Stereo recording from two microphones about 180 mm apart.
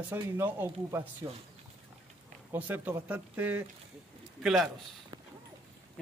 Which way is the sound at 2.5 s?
10° right (ahead or behind).